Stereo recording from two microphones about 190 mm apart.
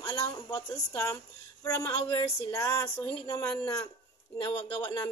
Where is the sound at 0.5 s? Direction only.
15° left (ahead or behind).